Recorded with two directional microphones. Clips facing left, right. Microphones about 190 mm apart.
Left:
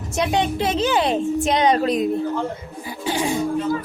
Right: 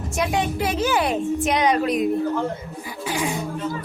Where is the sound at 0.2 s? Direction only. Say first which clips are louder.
Left 2 dB; 25° left (ahead or behind).